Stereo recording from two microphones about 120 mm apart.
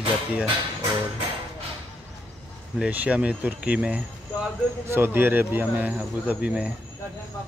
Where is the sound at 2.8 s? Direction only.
10° right (ahead or behind).